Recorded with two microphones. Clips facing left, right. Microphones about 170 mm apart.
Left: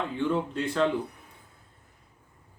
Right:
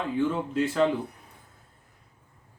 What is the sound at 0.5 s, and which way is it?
Speech, 5° right (ahead or behind).